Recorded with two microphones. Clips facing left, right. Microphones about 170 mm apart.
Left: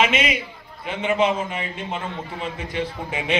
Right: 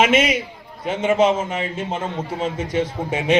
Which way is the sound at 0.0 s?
45° right (ahead or behind).